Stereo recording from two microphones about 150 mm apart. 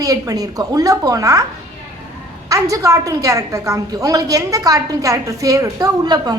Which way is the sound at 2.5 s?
20° right (ahead or behind).